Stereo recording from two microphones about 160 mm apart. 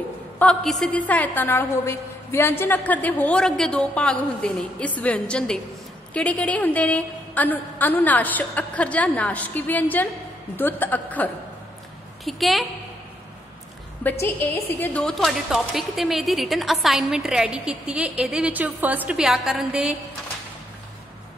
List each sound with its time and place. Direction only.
0.4 s a woman's voice: 5° left (ahead or behind)
12.3 s a woman's voice: centre (ahead or behind)
14.2 s a woman's voice: 15° left (ahead or behind); by 20.0 s 5° right (ahead or behind)